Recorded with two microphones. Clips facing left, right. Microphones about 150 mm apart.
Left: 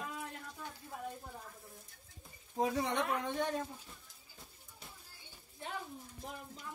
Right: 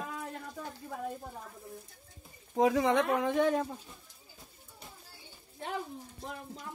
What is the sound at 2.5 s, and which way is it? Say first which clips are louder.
Speech: right 8 dB; 90° right.